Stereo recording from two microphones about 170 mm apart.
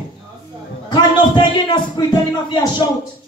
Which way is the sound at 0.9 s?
25° left (ahead or behind).